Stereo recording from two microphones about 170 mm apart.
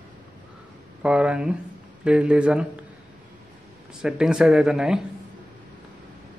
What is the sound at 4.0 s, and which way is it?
Speech, 5° right (ahead or behind).